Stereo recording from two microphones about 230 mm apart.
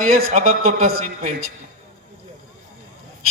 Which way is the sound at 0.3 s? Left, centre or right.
Right.